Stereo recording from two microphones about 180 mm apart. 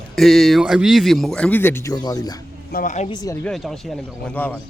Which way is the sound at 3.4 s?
Centre (ahead or behind).